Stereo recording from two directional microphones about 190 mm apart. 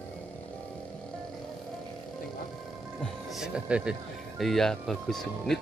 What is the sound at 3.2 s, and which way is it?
Speech, centre (ahead or behind).